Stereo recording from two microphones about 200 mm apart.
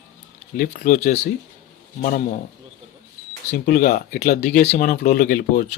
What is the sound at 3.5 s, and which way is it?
Speech, 45° left (ahead or behind).